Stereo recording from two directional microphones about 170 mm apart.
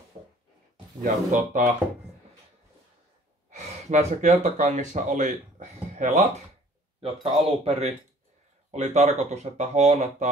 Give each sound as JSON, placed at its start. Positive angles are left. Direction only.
{"t": 1.0, "sound": "speech", "side_deg": -50}
{"t": 3.4, "sound": "speech", "side_deg": -45}